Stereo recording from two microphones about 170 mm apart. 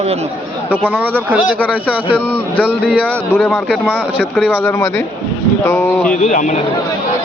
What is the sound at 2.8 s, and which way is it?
Speech, 5° right (ahead or behind).